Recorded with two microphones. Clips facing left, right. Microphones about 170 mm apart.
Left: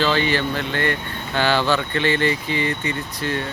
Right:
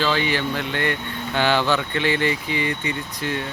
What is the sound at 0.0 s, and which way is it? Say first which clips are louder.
Speech: left 2 dB; 10° right (ahead or behind).